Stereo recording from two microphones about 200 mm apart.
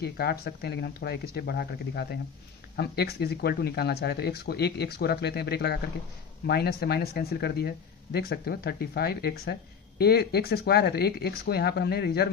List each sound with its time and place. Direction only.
0.0 s speech: 55° left (ahead or behind)